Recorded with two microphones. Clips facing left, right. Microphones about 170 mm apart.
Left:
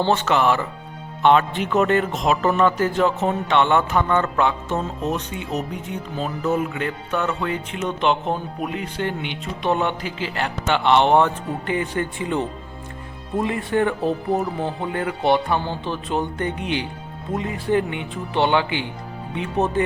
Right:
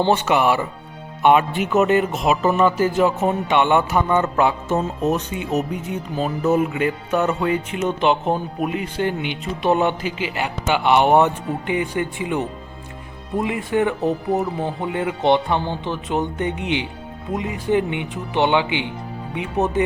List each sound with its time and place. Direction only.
0.0 s speech: 15° right (ahead or behind)